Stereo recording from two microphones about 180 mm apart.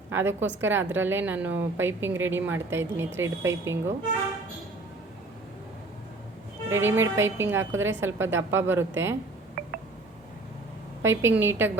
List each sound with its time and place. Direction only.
0.1 s a woman's voice: 10° right (ahead or behind)
6.7 s a woman's voice: 15° right (ahead or behind)
9.6 s a sound: 55° right (ahead or behind)
11.0 s a woman's voice: 15° right (ahead or behind)